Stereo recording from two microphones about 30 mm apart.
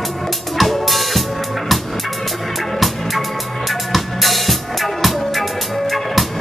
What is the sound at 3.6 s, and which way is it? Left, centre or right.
Music, centre.